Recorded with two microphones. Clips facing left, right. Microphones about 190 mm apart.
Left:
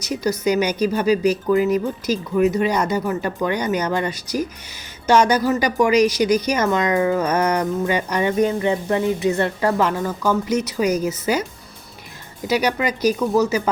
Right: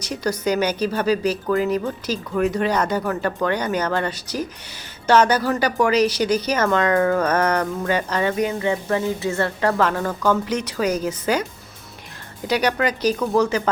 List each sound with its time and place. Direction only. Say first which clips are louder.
0.0 s speech: left 2 dB; 10° left (ahead or behind)
12.5 s speech: even; 10° left (ahead or behind)